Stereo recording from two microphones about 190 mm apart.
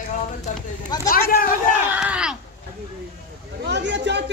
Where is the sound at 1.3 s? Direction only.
45° left (ahead or behind).